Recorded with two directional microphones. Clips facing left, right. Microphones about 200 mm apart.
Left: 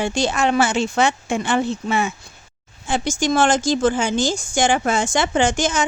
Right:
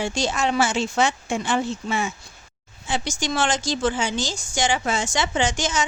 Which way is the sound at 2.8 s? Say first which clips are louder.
Left 6 dB; 50° left (ahead or behind).